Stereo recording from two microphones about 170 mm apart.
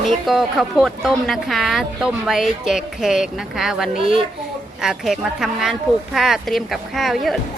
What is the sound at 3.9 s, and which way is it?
Speech, 50° left (ahead or behind).